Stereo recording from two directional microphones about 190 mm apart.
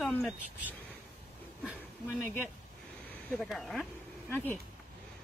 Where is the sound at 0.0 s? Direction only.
5° left (ahead or behind).